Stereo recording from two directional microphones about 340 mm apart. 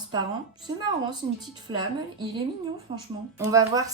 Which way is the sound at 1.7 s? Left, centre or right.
Centre.